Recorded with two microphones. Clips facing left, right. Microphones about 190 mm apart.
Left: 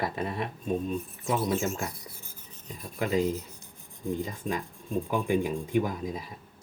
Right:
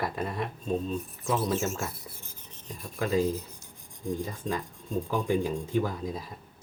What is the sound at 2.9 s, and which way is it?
Rub, 20° left (ahead or behind).